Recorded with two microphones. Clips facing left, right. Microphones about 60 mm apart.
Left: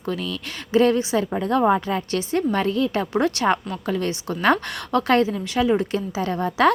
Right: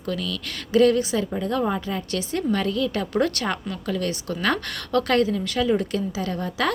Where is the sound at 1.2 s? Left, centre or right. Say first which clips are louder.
Left 4 dB; left.